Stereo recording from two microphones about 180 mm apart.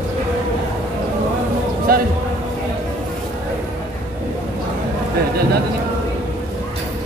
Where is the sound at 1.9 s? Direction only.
55° right (ahead or behind).